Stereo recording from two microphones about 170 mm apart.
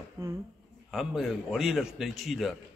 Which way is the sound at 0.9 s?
Centre (ahead or behind).